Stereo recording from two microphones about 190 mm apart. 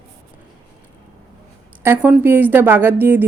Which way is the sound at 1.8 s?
10° right (ahead or behind).